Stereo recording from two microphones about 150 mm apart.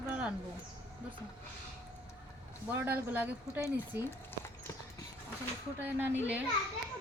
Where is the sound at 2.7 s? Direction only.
15° right (ahead or behind).